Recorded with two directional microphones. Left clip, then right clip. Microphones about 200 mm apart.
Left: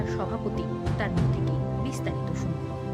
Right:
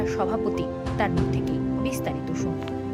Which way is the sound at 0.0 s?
20° right (ahead or behind).